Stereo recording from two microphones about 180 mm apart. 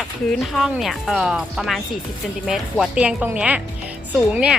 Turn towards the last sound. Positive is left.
turn(degrees=-5)  # may be behind; listen again after turning